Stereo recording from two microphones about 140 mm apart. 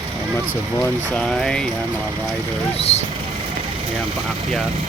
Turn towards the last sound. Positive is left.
turn(degrees=50)  # may be behind; listen again after turning